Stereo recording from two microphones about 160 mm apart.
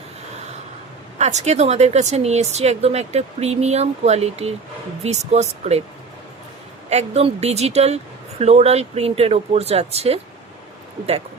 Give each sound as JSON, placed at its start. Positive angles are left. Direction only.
{"t": 1.2, "sound": "speech", "side_deg": -45}
{"t": 6.9, "sound": "speech", "side_deg": -40}